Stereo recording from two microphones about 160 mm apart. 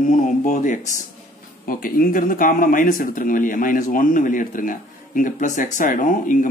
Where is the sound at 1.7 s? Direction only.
60° left (ahead or behind).